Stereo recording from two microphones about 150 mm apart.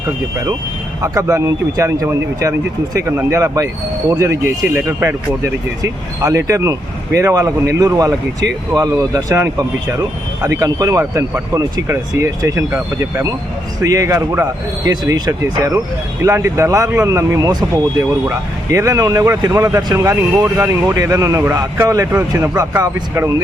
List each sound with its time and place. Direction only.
1.0 s speech: 20° right (ahead or behind)